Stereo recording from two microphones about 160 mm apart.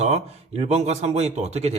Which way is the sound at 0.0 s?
40° right (ahead or behind).